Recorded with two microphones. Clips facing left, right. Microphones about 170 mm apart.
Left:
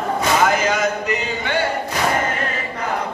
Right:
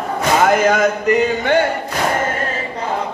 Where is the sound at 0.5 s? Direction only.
55° right (ahead or behind).